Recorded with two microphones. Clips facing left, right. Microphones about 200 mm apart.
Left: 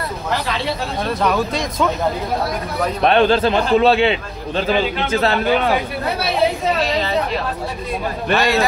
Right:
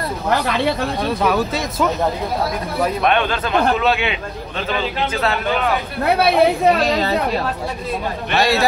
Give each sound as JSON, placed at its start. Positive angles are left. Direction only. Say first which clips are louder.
{"t": 1.2, "sound": "speech", "louder": "left 1 dB", "side_deg": -5}
{"t": 3.0, "sound": "a man's voice", "louder": "left 9 dB", "side_deg": 35}
{"t": 6.1, "sound": "speech", "louder": "right 4 dB", "side_deg": -60}
{"t": 8.4, "sound": "a man's voice", "louder": "right 1 dB", "side_deg": -35}